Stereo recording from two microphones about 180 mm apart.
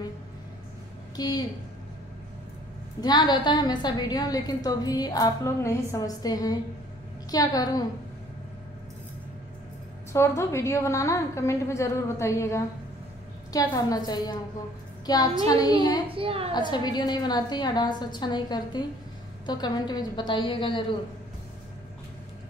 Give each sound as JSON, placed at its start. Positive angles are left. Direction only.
{"t": 1.1, "sound": "a woman's voice", "side_deg": 20}
{"t": 3.0, "sound": "a woman's voice", "side_deg": 25}
{"t": 10.1, "sound": "a woman's voice", "side_deg": 15}
{"t": 16.1, "sound": "a woman's voice", "side_deg": -30}
{"t": 16.5, "sound": "a woman's voice", "side_deg": 25}